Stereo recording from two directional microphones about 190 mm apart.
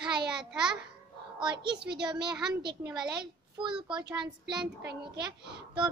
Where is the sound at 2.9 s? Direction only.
20° right (ahead or behind).